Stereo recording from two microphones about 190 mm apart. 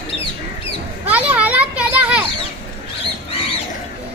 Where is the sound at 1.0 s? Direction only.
10° right (ahead or behind).